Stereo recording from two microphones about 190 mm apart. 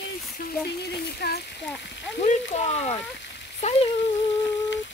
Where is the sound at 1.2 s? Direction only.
60° left (ahead or behind).